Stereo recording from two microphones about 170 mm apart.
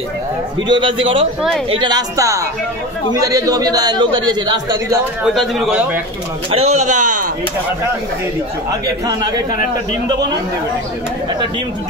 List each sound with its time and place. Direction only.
0.7 s a man's voice: 30° right (ahead or behind)
5.2 s a man's voice: centre (ahead or behind)
6.5 s a man's voice: 40° right (ahead or behind)
9.0 s a man's voice: 25° right (ahead or behind)